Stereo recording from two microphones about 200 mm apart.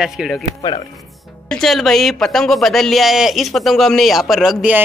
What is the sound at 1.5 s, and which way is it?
Speech, centre (ahead or behind).